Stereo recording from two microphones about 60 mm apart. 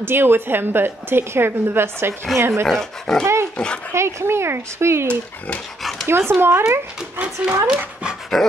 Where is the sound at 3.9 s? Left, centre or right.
Right.